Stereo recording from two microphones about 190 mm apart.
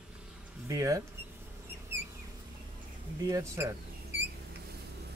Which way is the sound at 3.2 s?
15° right (ahead or behind).